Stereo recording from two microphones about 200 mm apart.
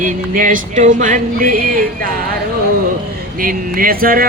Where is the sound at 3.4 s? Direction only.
45° right (ahead or behind).